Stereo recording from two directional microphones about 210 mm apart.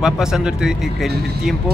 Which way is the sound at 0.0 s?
5° right (ahead or behind).